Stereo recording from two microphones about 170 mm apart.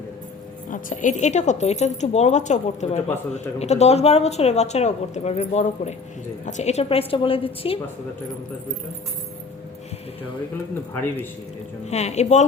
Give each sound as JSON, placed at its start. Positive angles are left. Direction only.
{"t": 0.7, "sound": "a woman's voice", "side_deg": 50}
{"t": 11.9, "sound": "a woman's voice", "side_deg": 40}